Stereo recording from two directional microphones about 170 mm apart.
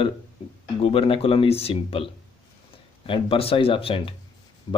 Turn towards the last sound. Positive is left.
turn(degrees=30)  # may be behind; listen again after turning